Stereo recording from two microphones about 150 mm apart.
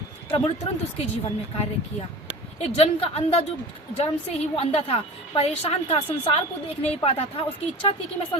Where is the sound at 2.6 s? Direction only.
45° left (ahead or behind).